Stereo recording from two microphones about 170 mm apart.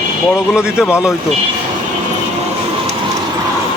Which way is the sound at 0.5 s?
5° right (ahead or behind).